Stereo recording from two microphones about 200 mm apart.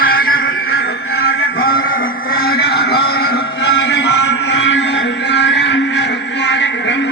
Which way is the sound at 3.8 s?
60° left (ahead or behind).